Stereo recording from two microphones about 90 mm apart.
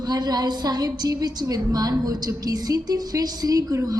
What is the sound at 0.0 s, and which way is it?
A woman's voice, 50° right (ahead or behind).